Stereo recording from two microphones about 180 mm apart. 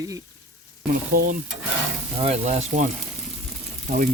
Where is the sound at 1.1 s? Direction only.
45° right (ahead or behind).